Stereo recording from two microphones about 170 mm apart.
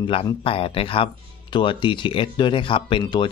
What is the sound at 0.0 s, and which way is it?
Speech, 30° left (ahead or behind).